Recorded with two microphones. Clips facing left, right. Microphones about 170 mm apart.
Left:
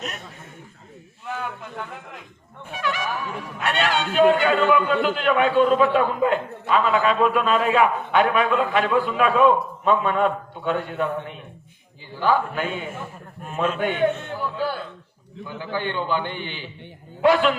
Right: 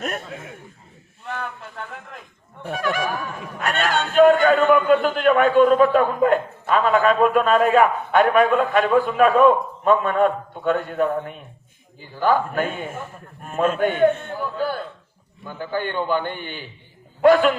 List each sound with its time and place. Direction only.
2.7 s a man's voice: 45° right (ahead or behind)
12.2 s a man's voice: 45° right (ahead or behind)